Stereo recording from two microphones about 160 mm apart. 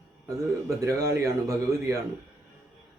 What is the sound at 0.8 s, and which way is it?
Speech, 20° right (ahead or behind).